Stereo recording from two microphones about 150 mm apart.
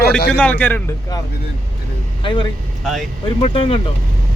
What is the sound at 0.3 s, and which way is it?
Speech, 10° left (ahead or behind).